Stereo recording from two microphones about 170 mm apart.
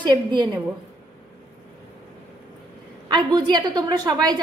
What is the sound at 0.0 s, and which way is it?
Speech, 25° right (ahead or behind).